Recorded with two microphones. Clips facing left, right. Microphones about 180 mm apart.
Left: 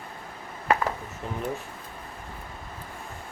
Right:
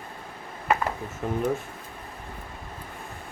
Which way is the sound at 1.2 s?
55° right (ahead or behind).